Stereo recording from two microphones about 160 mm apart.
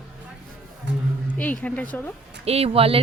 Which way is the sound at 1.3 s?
10° left (ahead or behind).